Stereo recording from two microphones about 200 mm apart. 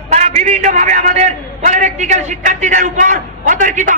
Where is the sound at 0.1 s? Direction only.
35° right (ahead or behind).